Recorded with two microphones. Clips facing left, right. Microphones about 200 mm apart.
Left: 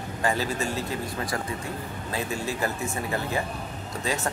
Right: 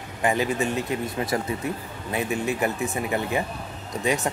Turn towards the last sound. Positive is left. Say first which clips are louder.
# right 4 dB
turn(degrees=-20)  # may be behind; listen again after turning